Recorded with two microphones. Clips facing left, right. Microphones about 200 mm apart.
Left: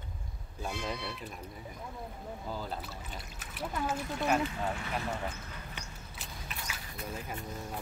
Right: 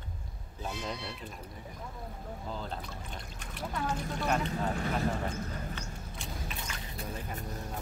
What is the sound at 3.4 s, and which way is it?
Speech, 5° left (ahead or behind).